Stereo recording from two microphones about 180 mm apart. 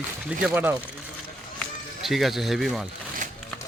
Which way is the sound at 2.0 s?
Centre (ahead or behind).